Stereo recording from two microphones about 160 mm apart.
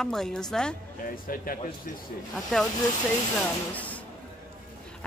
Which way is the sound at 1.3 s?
60° left (ahead or behind).